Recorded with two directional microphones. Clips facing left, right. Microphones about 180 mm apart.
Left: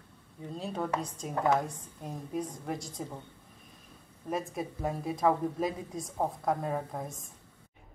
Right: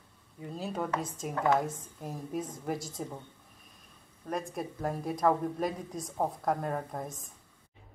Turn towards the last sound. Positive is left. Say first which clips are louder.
# even
turn(degrees=0)  # may be behind; listen again after turning